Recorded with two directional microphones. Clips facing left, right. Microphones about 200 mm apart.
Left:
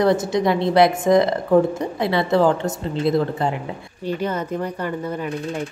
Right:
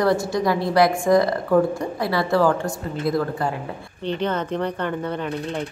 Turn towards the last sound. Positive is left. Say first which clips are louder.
# left 1 dB
turn(degrees=5)  # may be behind; listen again after turning